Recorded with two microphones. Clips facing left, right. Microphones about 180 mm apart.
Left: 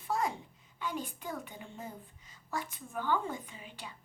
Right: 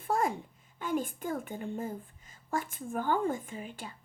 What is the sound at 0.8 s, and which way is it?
A woman's voice, 50° right (ahead or behind).